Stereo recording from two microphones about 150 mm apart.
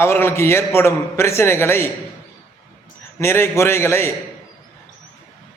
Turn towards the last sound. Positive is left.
turn(degrees=15)  # may be behind; listen again after turning